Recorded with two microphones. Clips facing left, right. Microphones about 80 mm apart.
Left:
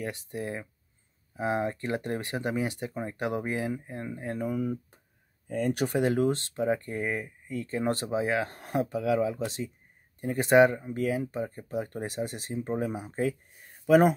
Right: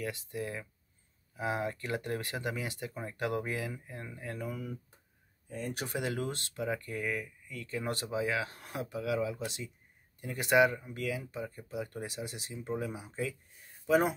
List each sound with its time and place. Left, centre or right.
0.0 s speech: left
5.5 s speech: left
5.9 s speech: left